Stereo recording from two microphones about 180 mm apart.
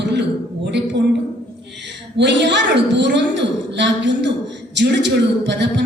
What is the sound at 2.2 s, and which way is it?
A woman's voice, 75° right (ahead or behind).